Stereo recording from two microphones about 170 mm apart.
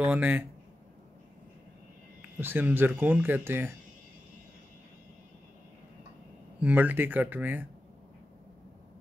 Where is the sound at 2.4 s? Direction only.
10° right (ahead or behind).